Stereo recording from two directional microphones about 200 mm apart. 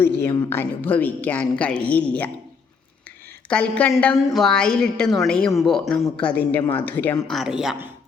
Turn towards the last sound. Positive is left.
turn(degrees=-5)  # may be behind; listen again after turning